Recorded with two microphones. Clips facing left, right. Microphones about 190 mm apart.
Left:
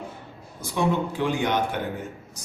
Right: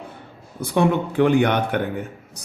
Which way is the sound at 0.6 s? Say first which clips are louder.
Right 5 dB; 60° right (ahead or behind).